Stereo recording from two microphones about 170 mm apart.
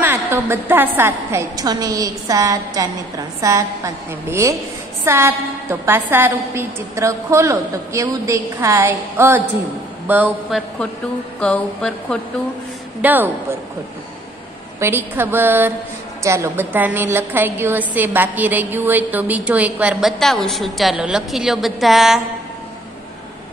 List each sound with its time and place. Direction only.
0.0 s a woman's voice: 15° right (ahead or behind)
11.3 s speech: 5° left (ahead or behind)
13.0 s a woman's voice: 10° right (ahead or behind)
14.8 s a woman's voice: 15° right (ahead or behind)